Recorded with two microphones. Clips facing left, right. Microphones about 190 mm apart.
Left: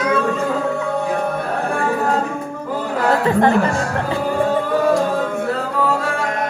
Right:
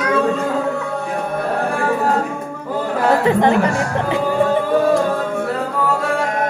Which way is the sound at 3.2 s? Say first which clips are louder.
Left 1 dB; 20° right (ahead or behind).